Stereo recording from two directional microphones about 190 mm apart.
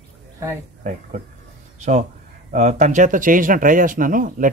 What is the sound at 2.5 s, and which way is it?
Speech, 40° right (ahead or behind).